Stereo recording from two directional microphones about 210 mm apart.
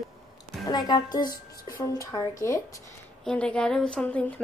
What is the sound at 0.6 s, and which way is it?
A woman's voice, 20° left (ahead or behind).